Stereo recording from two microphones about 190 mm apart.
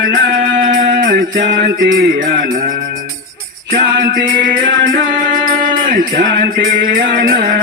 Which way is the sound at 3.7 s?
50° right (ahead or behind).